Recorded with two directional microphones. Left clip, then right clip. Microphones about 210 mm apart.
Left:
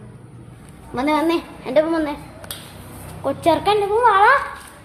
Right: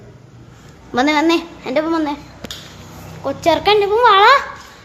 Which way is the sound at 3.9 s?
40° right (ahead or behind).